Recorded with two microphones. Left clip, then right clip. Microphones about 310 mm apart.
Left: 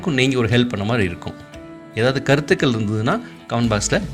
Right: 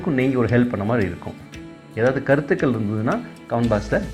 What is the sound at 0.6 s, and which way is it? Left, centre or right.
Speech, left.